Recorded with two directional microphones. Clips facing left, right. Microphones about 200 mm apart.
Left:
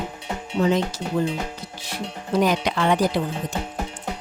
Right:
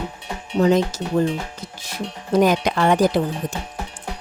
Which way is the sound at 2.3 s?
45° right (ahead or behind).